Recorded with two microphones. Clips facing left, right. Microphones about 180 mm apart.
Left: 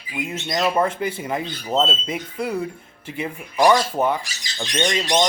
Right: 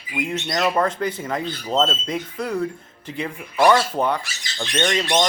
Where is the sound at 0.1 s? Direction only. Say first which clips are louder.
Right 1 dB; 5° left (ahead or behind).